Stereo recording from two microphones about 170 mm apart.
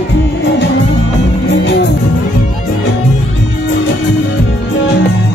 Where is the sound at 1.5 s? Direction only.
90° left.